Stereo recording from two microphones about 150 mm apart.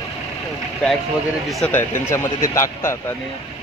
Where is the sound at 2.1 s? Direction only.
20° left (ahead or behind).